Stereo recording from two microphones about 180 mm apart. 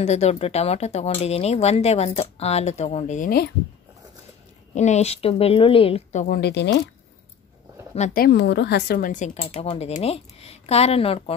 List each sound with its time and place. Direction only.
0.0 s speech: 35° left (ahead or behind); by 3.5 s 60° left (ahead or behind)
4.7 s speech: 40° left (ahead or behind)
6.2 s speech: 60° left (ahead or behind)
8.1 s speech: 55° left (ahead or behind); by 11.3 s 35° left (ahead or behind)